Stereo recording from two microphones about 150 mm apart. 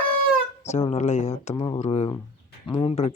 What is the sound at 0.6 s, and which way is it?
Speech, 45° left (ahead or behind).